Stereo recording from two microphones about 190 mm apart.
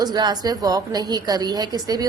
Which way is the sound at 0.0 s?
20° right (ahead or behind).